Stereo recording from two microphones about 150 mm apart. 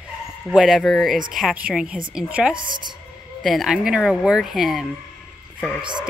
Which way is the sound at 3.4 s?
Centre (ahead or behind).